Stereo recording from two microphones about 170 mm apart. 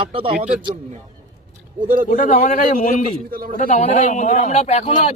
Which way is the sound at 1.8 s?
55° right (ahead or behind).